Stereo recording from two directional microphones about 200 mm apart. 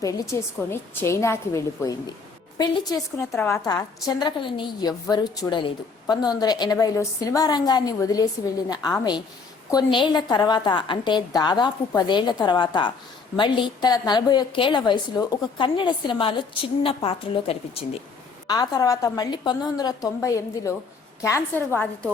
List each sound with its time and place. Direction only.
0.0 s a woman's voice: 15° left (ahead or behind); by 17.8 s 30° left (ahead or behind)
18.4 s a woman's voice: 20° left (ahead or behind)